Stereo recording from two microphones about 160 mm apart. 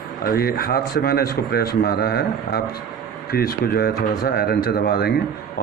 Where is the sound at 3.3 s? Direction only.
70° left (ahead or behind).